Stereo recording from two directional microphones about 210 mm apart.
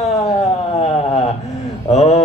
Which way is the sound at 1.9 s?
30° left (ahead or behind).